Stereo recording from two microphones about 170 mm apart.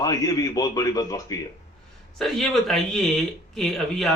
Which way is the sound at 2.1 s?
Centre (ahead or behind).